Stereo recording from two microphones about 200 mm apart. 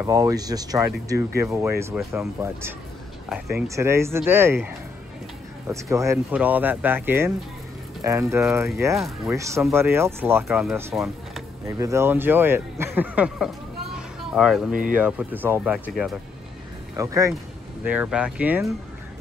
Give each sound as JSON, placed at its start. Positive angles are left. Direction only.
{"t": 0.0, "sound": "speech", "side_deg": -15}
{"t": 3.6, "sound": "speech", "side_deg": -15}
{"t": 13.9, "sound": "a sound", "side_deg": 0}
{"t": 15.0, "sound": "speech", "side_deg": -10}
{"t": 16.9, "sound": "speech", "side_deg": -15}